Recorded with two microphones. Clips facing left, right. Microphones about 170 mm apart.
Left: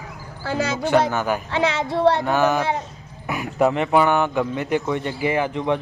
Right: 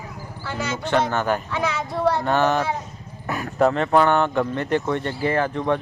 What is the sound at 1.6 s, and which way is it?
Speech, 25° left (ahead or behind).